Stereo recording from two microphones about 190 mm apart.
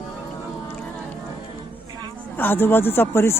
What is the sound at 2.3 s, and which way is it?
Speech, 10° left (ahead or behind).